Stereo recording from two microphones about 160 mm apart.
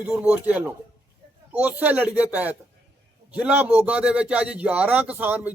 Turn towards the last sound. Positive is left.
turn(degrees=-10)  # may be behind; listen again after turning